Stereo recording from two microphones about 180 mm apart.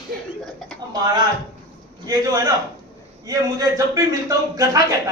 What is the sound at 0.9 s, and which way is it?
A man's voice, 20° right (ahead or behind).